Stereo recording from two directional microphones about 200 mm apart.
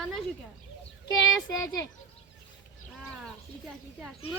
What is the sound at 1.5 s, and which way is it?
Speech, 15° left (ahead or behind).